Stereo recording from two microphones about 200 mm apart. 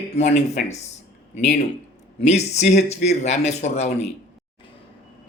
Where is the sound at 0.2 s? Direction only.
35° left (ahead or behind).